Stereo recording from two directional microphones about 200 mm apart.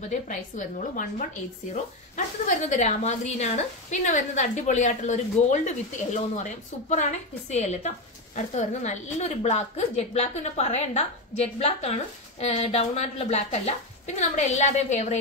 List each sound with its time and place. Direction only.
0.1 s a woman's voice: 40° left (ahead or behind)